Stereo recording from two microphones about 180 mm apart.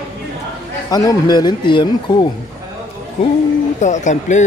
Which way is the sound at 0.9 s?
20° left (ahead or behind).